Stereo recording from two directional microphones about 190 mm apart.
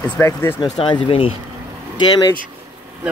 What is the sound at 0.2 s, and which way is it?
Speech, 10° left (ahead or behind).